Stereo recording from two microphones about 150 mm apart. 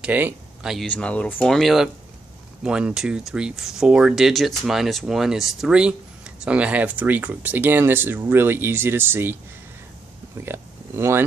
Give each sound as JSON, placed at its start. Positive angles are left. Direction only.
{"t": 0.0, "sound": "speech", "side_deg": -10}
{"t": 10.4, "sound": "speech", "side_deg": -15}